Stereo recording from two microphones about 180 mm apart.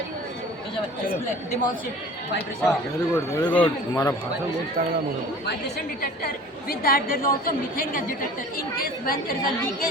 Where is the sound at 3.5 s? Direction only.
10° left (ahead or behind).